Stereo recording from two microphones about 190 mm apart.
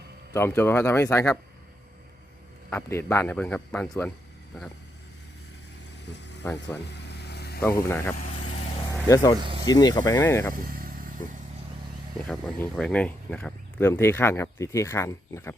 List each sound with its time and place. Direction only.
0.3 s speech: 10° left (ahead or behind)
2.6 s speech: 10° left (ahead or behind)
6.4 s speech: 15° left (ahead or behind)
6.9 s vehicle: 60° left (ahead or behind)
7.6 s speech: 15° left (ahead or behind)
8.2 s vehicle: 40° left (ahead or behind)
8.9 s a sound: 15° left (ahead or behind)
9.4 s snake: 30° right (ahead or behind)
9.6 s speech: 20° left (ahead or behind)
10.5 s vehicle: 50° right (ahead or behind)
12.3 s speech: 10° left (ahead or behind)